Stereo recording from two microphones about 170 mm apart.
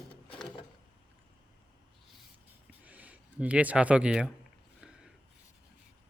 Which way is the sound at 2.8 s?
10° right (ahead or behind).